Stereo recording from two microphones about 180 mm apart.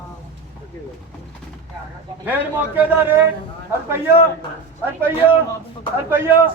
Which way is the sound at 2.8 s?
10° right (ahead or behind).